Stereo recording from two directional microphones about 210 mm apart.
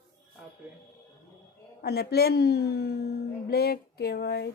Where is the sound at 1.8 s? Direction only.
50° left (ahead or behind).